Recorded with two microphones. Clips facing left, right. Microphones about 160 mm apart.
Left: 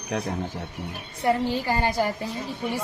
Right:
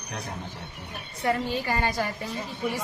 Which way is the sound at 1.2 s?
25° left (ahead or behind).